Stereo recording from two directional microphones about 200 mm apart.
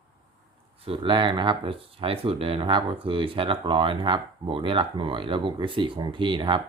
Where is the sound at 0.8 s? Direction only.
25° right (ahead or behind).